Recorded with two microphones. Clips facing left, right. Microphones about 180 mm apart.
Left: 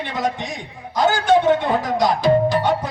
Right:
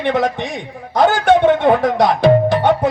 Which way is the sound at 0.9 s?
60° right (ahead or behind).